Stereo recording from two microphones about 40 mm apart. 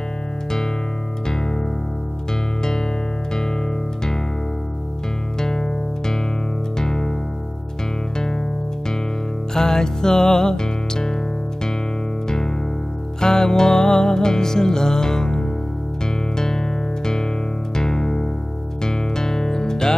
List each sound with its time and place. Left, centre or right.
1.3 s music: centre
3.3 s music: centre
5.4 s music: centre
8.2 s music: centre
9.5 s music: centre
12.3 s music: centre